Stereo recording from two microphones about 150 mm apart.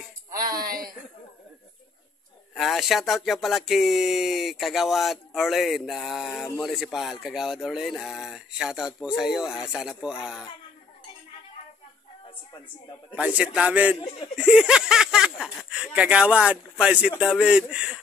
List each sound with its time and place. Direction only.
0.6 s a sound: 75° right (ahead or behind)
2.5 s speech: centre (ahead or behind)
13.1 s speech: 10° right (ahead or behind)